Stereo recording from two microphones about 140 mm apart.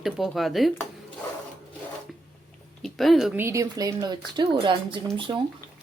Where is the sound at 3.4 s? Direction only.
20° right (ahead or behind).